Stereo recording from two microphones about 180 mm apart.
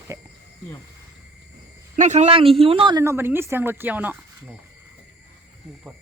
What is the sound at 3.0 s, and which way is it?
A woman's voice, 15° right (ahead or behind).